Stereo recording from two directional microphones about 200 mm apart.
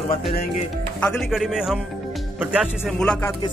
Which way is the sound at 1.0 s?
5° left (ahead or behind).